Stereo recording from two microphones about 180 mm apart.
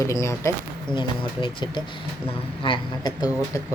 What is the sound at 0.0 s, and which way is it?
Speech, 15° left (ahead or behind).